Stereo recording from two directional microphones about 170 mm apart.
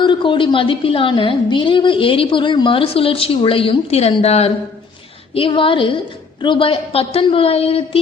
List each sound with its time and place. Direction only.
0.0 s a woman's voice: 30° left (ahead or behind)